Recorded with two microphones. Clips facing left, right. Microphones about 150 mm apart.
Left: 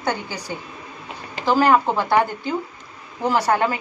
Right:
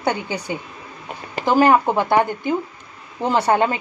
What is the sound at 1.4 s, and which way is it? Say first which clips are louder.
A woman's voice: right 2 dB; 15° right (ahead or behind).